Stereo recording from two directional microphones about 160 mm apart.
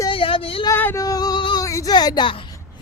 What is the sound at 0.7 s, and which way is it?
Speech, 15° left (ahead or behind).